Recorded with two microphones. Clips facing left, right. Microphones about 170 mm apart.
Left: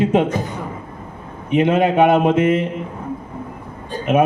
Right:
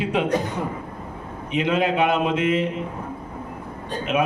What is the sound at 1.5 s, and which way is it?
A man's voice, 50° left (ahead or behind).